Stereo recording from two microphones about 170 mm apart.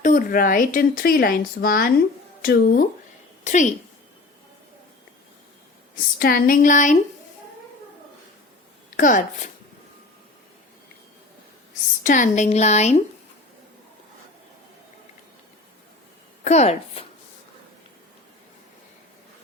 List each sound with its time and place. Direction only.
0.0 s speech: 55° left (ahead or behind)
3.4 s a woman's voice: 45° left (ahead or behind)
6.1 s a sound: 60° left (ahead or behind)
9.0 s a sound: 50° left (ahead or behind)
12.0 s a woman's voice: 50° left (ahead or behind)
16.4 s a woman's voice: 40° left (ahead or behind)